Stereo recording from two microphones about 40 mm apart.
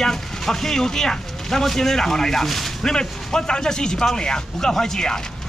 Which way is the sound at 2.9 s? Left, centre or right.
Centre.